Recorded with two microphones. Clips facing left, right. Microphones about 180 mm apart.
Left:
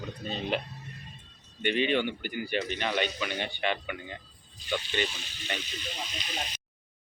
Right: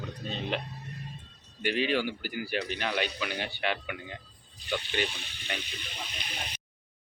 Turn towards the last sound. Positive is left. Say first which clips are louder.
# left 3 dB
turn(degrees=-60)  # may be behind; listen again after turning